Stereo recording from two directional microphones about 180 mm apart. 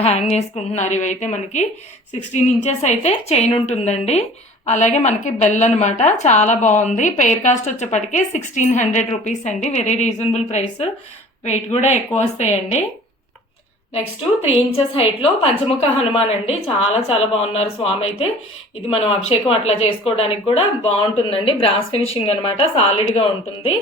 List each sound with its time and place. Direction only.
0.0 s a woman's voice: 35° left (ahead or behind)
14.9 s a woman's voice: 30° left (ahead or behind)